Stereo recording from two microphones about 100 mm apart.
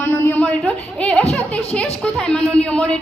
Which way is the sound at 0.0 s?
20° left (ahead or behind).